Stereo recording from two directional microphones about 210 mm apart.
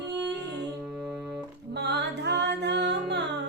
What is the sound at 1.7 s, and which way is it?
Music, 55° right (ahead or behind).